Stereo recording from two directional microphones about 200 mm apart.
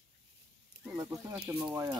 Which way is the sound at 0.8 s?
5° right (ahead or behind).